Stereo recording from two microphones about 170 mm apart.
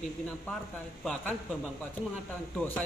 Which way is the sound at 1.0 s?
Centre (ahead or behind).